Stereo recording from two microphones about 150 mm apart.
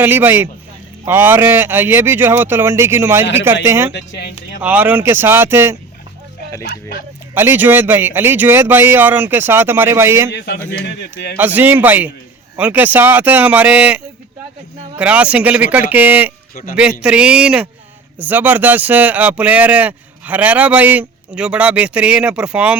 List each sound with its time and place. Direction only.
0.0 s speech: 15° right (ahead or behind)
7.3 s speech: 15° right (ahead or behind)